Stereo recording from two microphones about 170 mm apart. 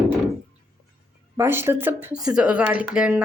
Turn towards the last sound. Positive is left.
turn(degrees=-10)  # may be behind; listen again after turning